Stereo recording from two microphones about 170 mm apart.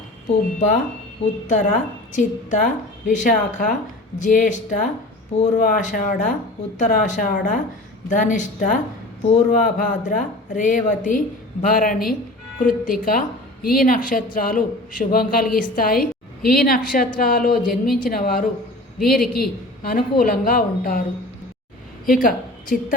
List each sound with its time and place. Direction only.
1.5 s a woman's voice: 45° left (ahead or behind)
17.7 s speech: centre (ahead or behind)
18.0 s a woman's voice: 55° left (ahead or behind)
22.0 s a woman's voice: 55° left (ahead or behind)